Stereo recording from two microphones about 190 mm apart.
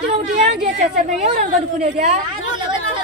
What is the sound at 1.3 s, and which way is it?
Speech, 45° right (ahead or behind).